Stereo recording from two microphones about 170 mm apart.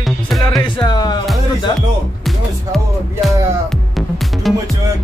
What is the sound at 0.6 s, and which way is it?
Speech, 25° left (ahead or behind).